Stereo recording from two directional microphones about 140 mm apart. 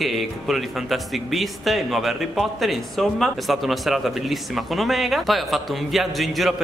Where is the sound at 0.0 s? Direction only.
Centre (ahead or behind).